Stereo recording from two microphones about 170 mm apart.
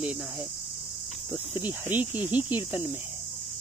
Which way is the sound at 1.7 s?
10° right (ahead or behind).